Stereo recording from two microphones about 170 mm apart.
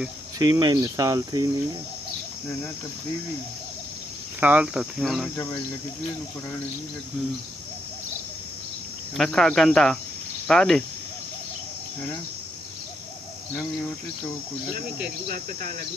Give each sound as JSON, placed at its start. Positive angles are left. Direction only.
{"t": 0.4, "sound": "speech", "side_deg": -25}
{"t": 4.4, "sound": "speech", "side_deg": -10}
{"t": 5.3, "sound": "speech", "side_deg": 10}
{"t": 9.1, "sound": "speech", "side_deg": 5}